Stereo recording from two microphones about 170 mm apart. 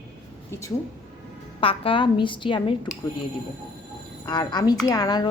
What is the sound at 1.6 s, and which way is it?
Speech, 30° left (ahead or behind).